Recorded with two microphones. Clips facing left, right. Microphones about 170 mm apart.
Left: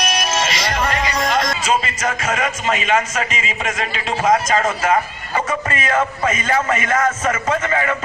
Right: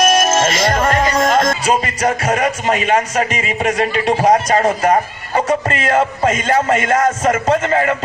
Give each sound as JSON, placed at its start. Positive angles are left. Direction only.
{"t": 0.0, "sound": "music", "side_deg": -50}
{"t": 3.3, "sound": "a man's voice", "side_deg": -45}